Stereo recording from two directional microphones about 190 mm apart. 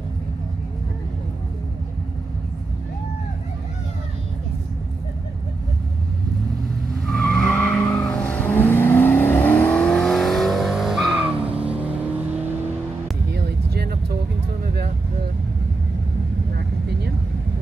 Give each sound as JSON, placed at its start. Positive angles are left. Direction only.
{"t": 7.1, "sound": "vehicle", "side_deg": 5}
{"t": 13.3, "sound": "music", "side_deg": -55}